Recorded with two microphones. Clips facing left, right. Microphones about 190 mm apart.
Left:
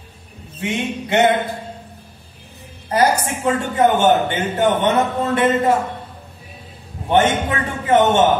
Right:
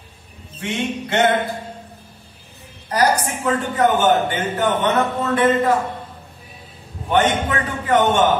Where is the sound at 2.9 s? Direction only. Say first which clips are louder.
Left 1 dB; 25° left (ahead or behind).